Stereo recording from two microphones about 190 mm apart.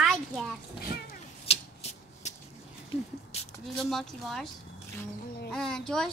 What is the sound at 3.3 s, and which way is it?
Squish, 35° left (ahead or behind).